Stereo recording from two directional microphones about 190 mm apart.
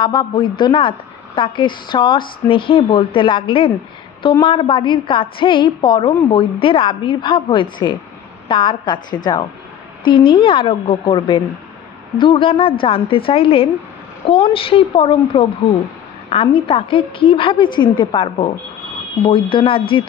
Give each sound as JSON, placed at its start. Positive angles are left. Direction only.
{"t": 0.0, "sound": "a woman's voice", "side_deg": 25}